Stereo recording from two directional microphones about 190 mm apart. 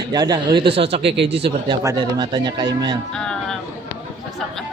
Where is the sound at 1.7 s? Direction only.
20° right (ahead or behind).